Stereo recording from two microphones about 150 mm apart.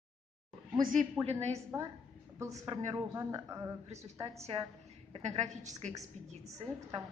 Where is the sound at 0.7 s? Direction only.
65° right (ahead or behind).